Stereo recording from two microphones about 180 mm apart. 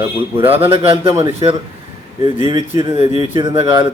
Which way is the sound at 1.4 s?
20° right (ahead or behind).